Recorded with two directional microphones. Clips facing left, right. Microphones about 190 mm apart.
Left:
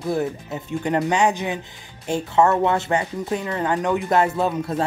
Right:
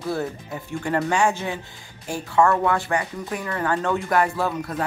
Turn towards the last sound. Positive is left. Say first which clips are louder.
# left 3 dB
turn(degrees=25)  # may be behind; listen again after turning